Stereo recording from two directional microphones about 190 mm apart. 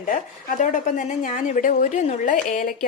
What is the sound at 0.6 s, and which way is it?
A woman's voice, 40° left (ahead or behind).